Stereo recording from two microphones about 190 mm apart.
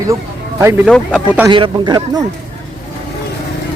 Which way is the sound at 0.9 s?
5° left (ahead or behind).